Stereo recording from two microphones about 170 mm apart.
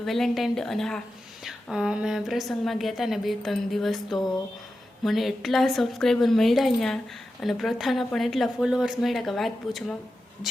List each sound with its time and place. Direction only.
0.0 s a woman's voice: centre (ahead or behind)